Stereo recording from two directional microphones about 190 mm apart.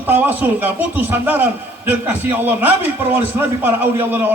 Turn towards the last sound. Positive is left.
turn(degrees=-10)  # may be behind; listen again after turning